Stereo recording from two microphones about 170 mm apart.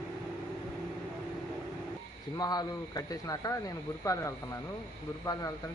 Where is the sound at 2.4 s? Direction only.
25° left (ahead or behind).